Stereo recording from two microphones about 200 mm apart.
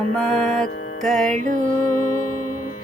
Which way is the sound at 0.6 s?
40° left (ahead or behind).